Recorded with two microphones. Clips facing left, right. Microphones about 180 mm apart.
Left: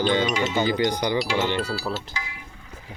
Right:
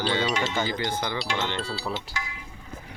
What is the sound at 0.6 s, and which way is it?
Speech, 15° left (ahead or behind).